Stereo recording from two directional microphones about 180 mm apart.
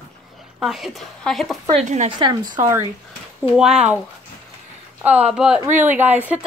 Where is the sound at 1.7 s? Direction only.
40° right (ahead or behind).